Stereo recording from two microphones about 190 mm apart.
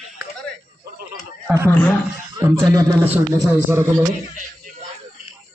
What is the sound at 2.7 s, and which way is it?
A man's voice, 15° right (ahead or behind).